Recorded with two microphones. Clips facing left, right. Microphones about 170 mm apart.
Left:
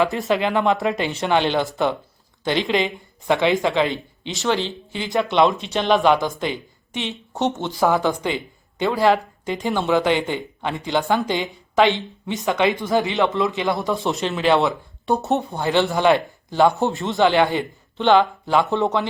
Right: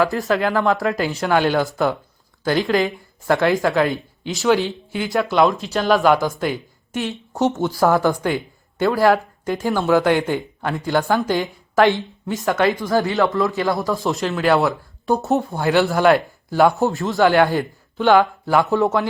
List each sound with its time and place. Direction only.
0.0 s a man's voice: centre (ahead or behind)
7.7 s speech: 15° left (ahead or behind)
8.8 s a man's voice: 5° right (ahead or behind)
11.4 s speech: 20° left (ahead or behind)
12.2 s a man's voice: centre (ahead or behind)
12.5 s speech: 15° left (ahead or behind)
13.9 s a man's voice: centre (ahead or behind)